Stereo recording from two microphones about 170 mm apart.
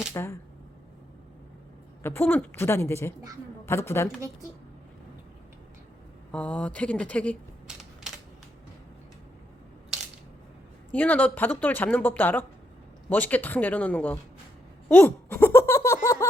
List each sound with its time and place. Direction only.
0.1 s a woman's voice: 15° left (ahead or behind)
2.0 s a woman's voice: 10° left (ahead or behind)
6.3 s a woman's voice: 5° left (ahead or behind)
10.9 s a woman's voice: 10° left (ahead or behind)
14.8 s a sound: 10° left (ahead or behind)